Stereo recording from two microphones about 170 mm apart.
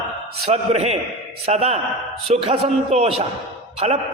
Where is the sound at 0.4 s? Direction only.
40° right (ahead or behind).